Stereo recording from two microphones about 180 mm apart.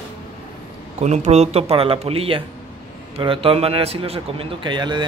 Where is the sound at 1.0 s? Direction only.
40° right (ahead or behind).